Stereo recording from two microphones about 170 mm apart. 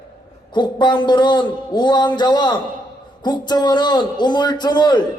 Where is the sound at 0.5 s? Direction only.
25° left (ahead or behind).